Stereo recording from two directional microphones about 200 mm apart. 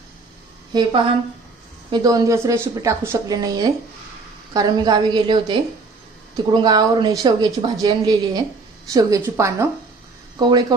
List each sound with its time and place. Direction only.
0.7 s a woman's voice: 20° right (ahead or behind)